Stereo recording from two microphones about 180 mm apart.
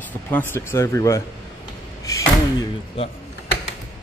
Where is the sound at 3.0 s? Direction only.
30° left (ahead or behind).